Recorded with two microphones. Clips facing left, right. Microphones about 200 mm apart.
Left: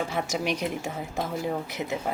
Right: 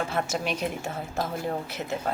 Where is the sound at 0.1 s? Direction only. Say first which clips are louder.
Left 1 dB; 10° left (ahead or behind).